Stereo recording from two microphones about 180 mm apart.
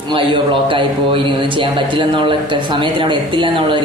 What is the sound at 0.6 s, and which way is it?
A man's voice, 30° right (ahead or behind).